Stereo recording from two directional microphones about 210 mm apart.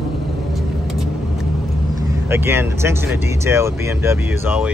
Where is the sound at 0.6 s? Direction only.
Centre (ahead or behind).